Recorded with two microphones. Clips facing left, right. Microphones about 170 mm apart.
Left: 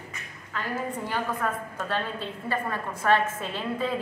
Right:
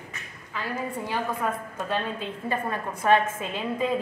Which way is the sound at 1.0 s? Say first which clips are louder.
Right 2 dB; 10° right (ahead or behind).